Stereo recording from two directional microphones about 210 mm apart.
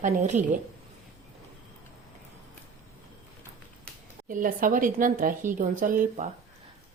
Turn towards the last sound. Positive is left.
turn(degrees=-35)  # may be behind; listen again after turning